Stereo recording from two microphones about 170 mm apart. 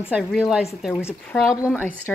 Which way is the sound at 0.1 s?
Centre (ahead or behind).